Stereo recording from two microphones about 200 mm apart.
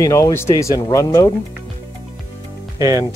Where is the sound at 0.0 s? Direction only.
15° left (ahead or behind).